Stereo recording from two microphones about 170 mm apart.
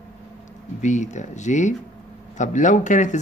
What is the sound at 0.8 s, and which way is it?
Speech, 45° left (ahead or behind).